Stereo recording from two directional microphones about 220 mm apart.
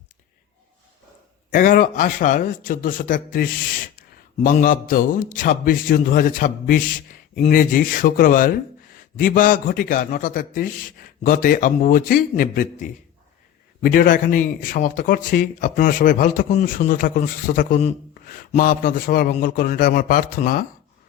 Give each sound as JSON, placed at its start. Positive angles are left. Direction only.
{"t": 1.5, "sound": "speech", "side_deg": 40}